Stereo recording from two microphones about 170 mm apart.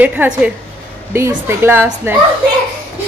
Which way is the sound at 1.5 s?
15° right (ahead or behind).